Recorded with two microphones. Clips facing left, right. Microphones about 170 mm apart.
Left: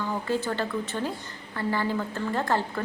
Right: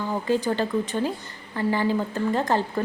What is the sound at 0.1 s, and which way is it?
A woman's voice, 15° right (ahead or behind).